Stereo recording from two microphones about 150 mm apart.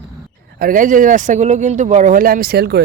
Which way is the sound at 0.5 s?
70° right (ahead or behind).